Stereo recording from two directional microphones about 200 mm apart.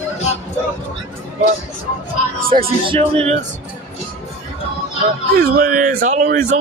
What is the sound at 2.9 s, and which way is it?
Speech, 30° right (ahead or behind).